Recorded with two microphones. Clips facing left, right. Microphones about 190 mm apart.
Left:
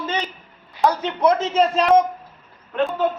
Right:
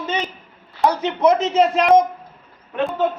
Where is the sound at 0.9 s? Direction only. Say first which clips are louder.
Right 2 dB; 20° right (ahead or behind).